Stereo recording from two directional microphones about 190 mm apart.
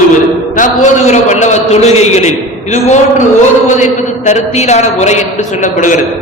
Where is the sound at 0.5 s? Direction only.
40° left (ahead or behind).